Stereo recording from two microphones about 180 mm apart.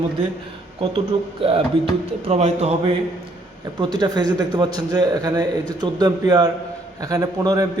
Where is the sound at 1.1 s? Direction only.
30° right (ahead or behind).